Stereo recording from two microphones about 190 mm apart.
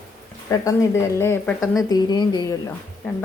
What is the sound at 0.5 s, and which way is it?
Speech, 15° left (ahead or behind).